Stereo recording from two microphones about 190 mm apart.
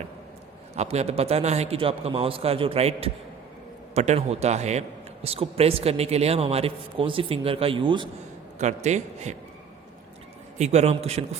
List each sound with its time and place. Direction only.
0.8 s a man's voice: 35° right (ahead or behind)
8.5 s a man's voice: 40° right (ahead or behind)
10.6 s a man's voice: 35° right (ahead or behind)